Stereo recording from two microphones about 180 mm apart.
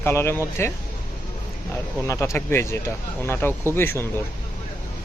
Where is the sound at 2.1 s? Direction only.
15° left (ahead or behind).